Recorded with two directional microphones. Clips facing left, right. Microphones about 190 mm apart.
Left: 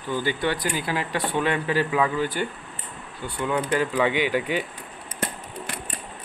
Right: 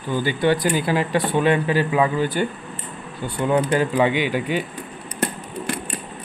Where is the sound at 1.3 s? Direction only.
15° right (ahead or behind).